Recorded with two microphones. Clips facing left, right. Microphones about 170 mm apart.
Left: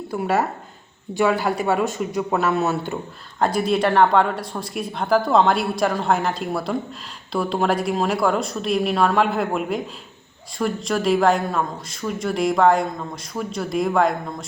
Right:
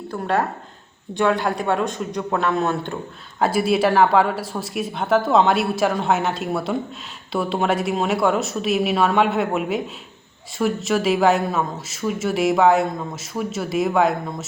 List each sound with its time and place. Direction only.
0.1 s speech: 5° left (ahead or behind)
3.4 s speech: 5° right (ahead or behind)